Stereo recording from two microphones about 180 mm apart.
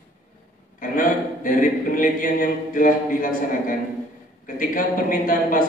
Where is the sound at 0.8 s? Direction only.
50° left (ahead or behind).